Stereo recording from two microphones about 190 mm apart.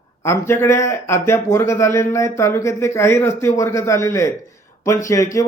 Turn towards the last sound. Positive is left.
turn(degrees=15)  # may be behind; listen again after turning